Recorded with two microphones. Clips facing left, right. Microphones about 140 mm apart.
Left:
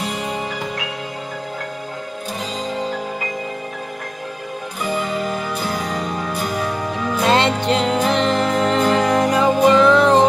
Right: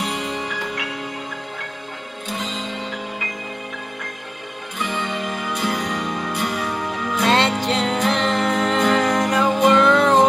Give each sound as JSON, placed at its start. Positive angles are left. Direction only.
{"t": 2.3, "sound": "music", "side_deg": 35}
{"t": 4.7, "sound": "music", "side_deg": 35}
{"t": 7.2, "sound": "music", "side_deg": 0}